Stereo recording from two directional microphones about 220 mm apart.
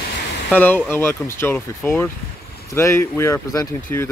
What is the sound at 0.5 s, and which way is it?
Speech, 10° left (ahead or behind).